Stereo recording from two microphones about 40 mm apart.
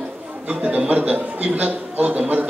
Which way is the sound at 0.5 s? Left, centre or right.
Right.